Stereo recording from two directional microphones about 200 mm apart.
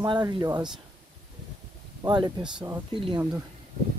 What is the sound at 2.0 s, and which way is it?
Speech, 20° right (ahead or behind).